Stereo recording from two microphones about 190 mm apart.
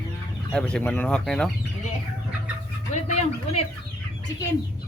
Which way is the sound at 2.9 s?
35° left (ahead or behind).